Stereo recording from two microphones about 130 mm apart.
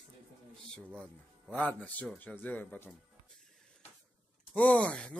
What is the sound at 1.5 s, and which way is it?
A man's voice, 10° left (ahead or behind).